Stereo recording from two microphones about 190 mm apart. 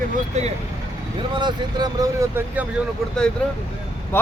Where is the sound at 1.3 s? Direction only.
25° right (ahead or behind).